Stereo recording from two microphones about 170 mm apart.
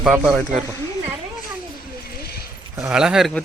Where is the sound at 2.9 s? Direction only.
5° right (ahead or behind).